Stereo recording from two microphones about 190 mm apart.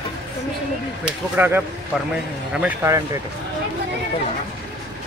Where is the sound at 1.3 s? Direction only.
10° right (ahead or behind).